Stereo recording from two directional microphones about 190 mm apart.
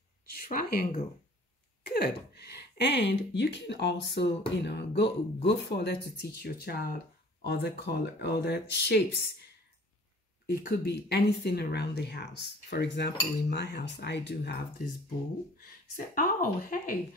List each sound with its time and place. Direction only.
0.3 s a woman's voice: 50° left (ahead or behind)
10.5 s speech: 55° left (ahead or behind)
16.2 s speech: 45° left (ahead or behind)